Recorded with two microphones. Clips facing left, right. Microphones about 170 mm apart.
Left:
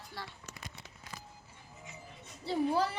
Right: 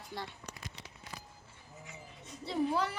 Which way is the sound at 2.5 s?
30° left (ahead or behind).